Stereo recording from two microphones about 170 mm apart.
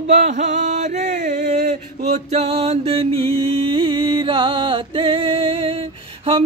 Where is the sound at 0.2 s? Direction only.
45° right (ahead or behind).